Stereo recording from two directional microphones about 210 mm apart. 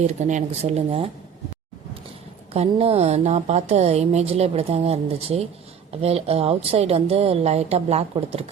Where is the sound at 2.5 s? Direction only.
30° right (ahead or behind).